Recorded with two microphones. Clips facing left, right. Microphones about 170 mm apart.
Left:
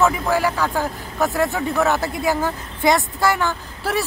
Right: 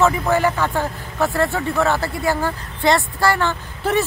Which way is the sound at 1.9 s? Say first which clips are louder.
Even; 15° left (ahead or behind).